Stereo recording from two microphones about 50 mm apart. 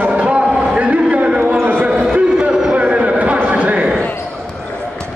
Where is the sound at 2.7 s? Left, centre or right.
Right.